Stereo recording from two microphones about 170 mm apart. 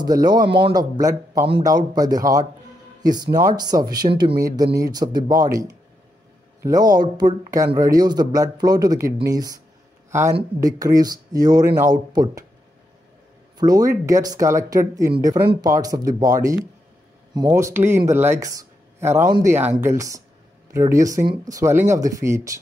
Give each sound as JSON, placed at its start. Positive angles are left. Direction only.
{"t": 0.0, "sound": "speech", "side_deg": -25}
{"t": 10.6, "sound": "speech", "side_deg": -20}
{"t": 13.6, "sound": "speech", "side_deg": -20}